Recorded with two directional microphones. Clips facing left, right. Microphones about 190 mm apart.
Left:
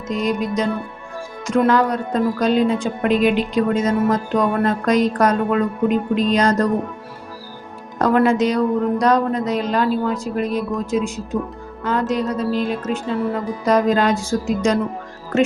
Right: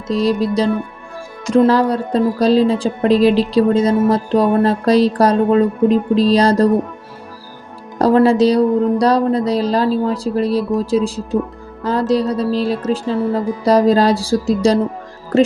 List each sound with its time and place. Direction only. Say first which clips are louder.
0.1 s a woman's voice: right 5 dB; 35° right (ahead or behind)
7.9 s a woman's voice: right 4 dB; 35° right (ahead or behind)